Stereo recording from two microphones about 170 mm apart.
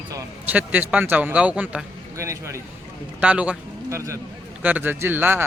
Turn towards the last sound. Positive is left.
turn(degrees=-10)  # may be behind; listen again after turning